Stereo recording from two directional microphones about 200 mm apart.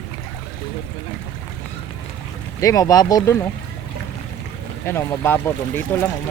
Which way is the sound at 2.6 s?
15° left (ahead or behind).